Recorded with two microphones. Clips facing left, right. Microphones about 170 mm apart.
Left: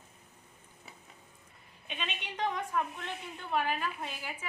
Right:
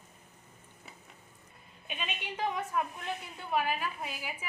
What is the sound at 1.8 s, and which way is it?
A woman's voice, 5° right (ahead or behind).